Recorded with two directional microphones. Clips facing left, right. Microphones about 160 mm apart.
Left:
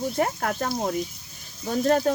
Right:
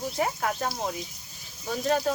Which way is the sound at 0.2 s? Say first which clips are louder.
Left 1 dB; 50° left (ahead or behind).